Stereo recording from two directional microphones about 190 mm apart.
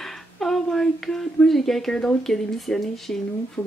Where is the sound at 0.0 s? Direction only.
Centre (ahead or behind).